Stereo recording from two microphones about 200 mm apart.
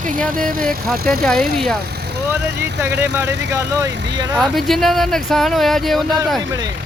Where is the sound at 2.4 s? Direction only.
60° right (ahead or behind).